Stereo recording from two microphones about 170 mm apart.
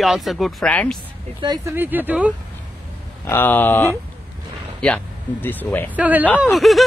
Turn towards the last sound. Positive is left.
turn(degrees=0)  # may be behind; listen again after turning